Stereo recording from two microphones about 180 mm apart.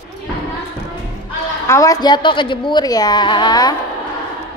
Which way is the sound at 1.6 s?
20° left (ahead or behind).